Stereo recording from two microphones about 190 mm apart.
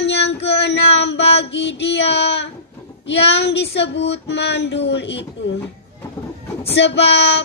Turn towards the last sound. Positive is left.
turn(degrees=65)  # may be behind; listen again after turning